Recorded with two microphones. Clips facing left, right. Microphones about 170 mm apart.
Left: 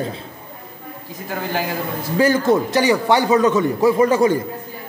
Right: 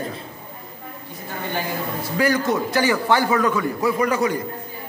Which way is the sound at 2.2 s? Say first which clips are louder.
Left 5 dB; 25° left (ahead or behind).